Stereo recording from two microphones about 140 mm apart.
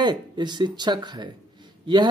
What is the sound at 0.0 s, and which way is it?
Speech, 30° right (ahead or behind).